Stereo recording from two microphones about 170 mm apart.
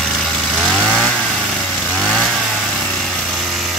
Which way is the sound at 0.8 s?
5° right (ahead or behind).